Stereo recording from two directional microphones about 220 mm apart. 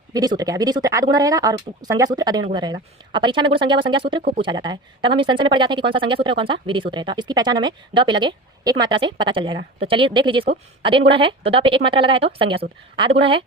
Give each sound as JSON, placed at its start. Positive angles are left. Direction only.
{"t": 0.1, "sound": "speech", "side_deg": -15}